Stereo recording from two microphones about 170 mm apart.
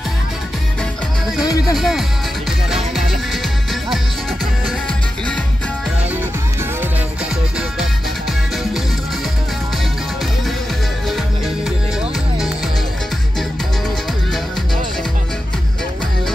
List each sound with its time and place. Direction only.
1.4 s music: 20° left (ahead or behind)
1.8 s speech: centre (ahead or behind)